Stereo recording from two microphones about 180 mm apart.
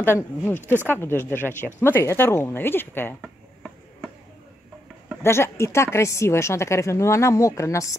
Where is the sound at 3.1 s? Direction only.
Centre (ahead or behind).